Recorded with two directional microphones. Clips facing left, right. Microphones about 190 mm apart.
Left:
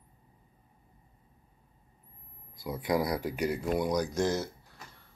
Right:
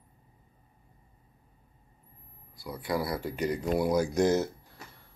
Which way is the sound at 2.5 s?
20° left (ahead or behind).